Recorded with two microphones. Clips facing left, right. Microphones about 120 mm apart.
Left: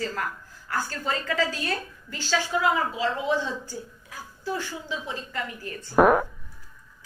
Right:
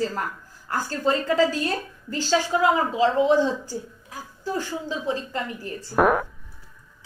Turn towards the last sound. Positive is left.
turn(degrees=0)  # may be behind; listen again after turning